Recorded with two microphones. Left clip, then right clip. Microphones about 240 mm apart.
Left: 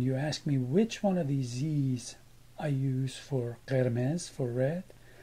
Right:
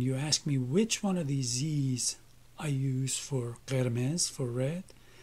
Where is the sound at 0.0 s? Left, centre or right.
Right.